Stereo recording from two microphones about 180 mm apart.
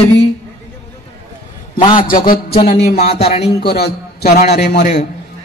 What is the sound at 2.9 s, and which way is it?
Speech, 40° left (ahead or behind).